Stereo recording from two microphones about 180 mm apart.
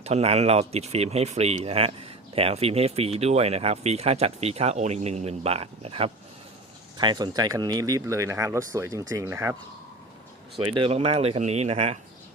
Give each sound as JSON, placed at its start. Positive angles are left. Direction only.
{"t": 0.0, "sound": "speech", "side_deg": -35}
{"t": 10.8, "sound": "speech", "side_deg": -30}